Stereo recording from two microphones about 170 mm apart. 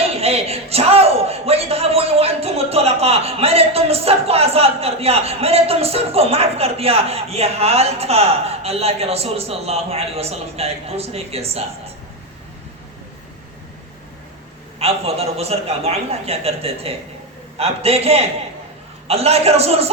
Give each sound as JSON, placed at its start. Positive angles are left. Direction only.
{"t": 0.0, "sound": "a man's voice", "side_deg": -35}
{"t": 14.8, "sound": "a man's voice", "side_deg": -35}